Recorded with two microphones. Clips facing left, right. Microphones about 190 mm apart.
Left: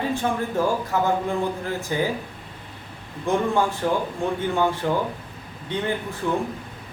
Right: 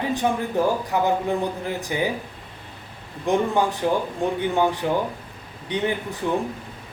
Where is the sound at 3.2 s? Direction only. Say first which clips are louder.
Right 1 dB; 15° right (ahead or behind).